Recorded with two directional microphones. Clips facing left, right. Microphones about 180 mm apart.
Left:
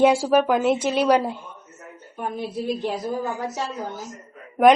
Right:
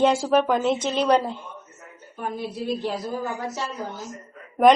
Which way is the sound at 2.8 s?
20° left (ahead or behind).